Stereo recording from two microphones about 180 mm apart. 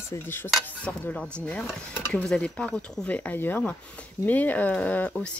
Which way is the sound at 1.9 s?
10° left (ahead or behind).